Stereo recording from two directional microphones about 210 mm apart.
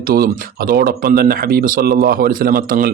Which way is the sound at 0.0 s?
45° right (ahead or behind).